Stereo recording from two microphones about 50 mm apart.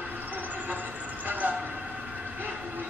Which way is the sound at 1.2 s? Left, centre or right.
Right.